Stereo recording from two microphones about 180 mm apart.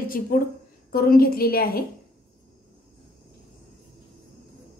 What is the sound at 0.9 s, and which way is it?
Speech, 55° left (ahead or behind).